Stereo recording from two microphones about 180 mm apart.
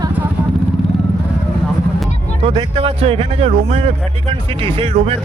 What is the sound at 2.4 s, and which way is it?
Speech, 30° right (ahead or behind).